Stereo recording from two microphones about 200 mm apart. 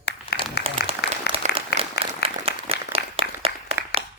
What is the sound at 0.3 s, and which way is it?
Applause, 55° left (ahead or behind).